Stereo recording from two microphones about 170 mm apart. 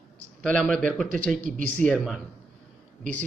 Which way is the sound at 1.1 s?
50° right (ahead or behind).